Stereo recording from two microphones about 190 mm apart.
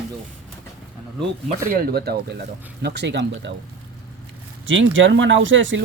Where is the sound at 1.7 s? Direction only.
55° right (ahead or behind).